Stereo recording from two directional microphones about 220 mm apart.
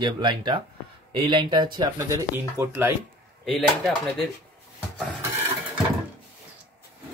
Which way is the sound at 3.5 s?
Centre (ahead or behind).